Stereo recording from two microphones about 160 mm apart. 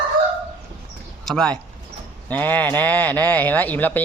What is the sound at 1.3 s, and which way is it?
Speech, 5° left (ahead or behind).